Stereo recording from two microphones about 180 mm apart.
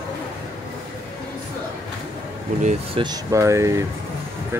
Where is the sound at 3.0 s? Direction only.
20° right (ahead or behind).